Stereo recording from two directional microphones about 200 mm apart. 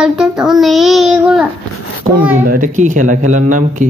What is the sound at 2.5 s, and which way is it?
Speech, 40° right (ahead or behind).